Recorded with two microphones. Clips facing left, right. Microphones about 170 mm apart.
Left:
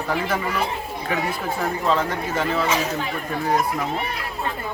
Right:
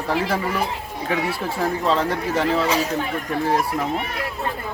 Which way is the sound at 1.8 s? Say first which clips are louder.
Even; 30° right (ahead or behind).